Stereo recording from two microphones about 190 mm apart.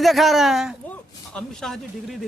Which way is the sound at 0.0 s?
Centre (ahead or behind).